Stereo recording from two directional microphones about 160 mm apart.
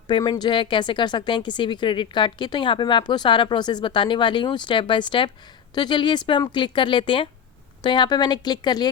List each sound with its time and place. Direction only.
0.1 s speech: 30° left (ahead or behind)